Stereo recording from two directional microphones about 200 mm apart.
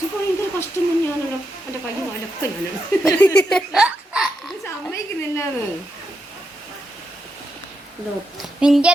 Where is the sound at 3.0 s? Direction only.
5° left (ahead or behind).